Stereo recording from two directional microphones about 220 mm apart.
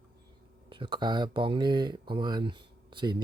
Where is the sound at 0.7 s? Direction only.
20° right (ahead or behind).